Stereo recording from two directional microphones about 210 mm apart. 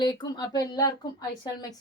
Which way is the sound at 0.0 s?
20° left (ahead or behind).